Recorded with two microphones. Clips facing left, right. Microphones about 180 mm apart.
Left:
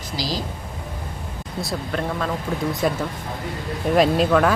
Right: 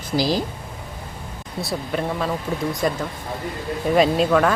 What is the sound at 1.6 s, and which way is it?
Speech, 5° right (ahead or behind).